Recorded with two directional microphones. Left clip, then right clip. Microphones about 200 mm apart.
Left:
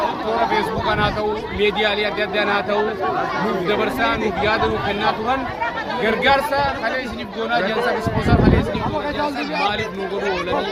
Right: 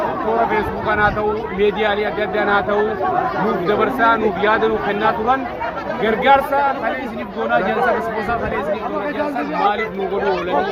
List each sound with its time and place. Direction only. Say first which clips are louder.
0.5 s speech: right 1 dB; 20° left (ahead or behind)
3.7 s speech: right 5 dB; 25° left (ahead or behind)
6.0 s speech: right 3 dB; 15° left (ahead or behind)